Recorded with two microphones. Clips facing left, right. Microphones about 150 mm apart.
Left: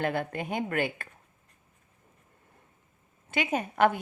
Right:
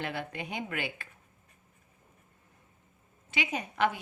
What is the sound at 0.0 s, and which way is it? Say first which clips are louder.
A woman's voice: left 6 dB; 50° left (ahead or behind).